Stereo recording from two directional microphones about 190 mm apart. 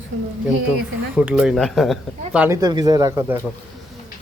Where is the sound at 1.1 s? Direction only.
5° right (ahead or behind).